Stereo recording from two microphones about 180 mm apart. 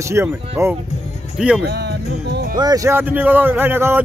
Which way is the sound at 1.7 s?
65° right (ahead or behind).